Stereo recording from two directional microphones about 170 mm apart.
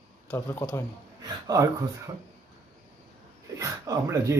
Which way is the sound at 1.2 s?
20° right (ahead or behind).